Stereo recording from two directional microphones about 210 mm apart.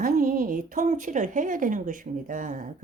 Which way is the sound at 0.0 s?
45° right (ahead or behind).